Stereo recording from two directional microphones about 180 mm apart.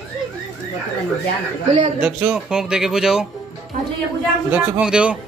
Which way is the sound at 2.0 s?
5° right (ahead or behind).